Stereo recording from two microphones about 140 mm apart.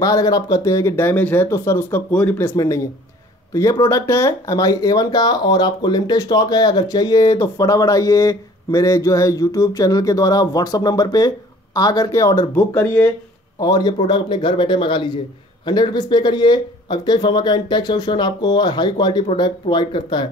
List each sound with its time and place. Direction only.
0.0 s speech: 25° left (ahead or behind)
2.5 s speech: 25° left (ahead or behind)
13.6 s speech: 25° left (ahead or behind)